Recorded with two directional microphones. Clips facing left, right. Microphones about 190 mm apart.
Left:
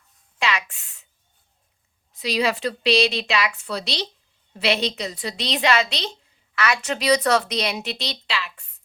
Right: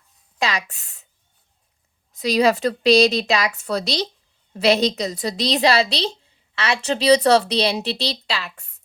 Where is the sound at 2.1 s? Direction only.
45° right (ahead or behind).